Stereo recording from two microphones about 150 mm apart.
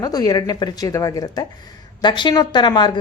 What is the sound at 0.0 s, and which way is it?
A woman's voice, 25° left (ahead or behind).